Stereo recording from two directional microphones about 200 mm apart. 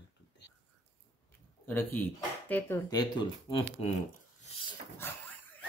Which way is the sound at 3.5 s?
30° left (ahead or behind).